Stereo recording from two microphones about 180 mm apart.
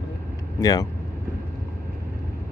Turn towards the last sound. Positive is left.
turn(degrees=20)  # may be behind; listen again after turning